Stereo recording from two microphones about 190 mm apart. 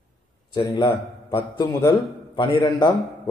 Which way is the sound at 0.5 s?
25° left (ahead or behind).